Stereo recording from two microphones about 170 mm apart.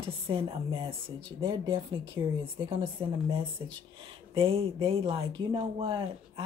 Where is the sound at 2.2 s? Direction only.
20° right (ahead or behind).